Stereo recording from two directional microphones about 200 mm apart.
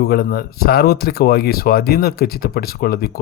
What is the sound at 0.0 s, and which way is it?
Speech, 50° left (ahead or behind).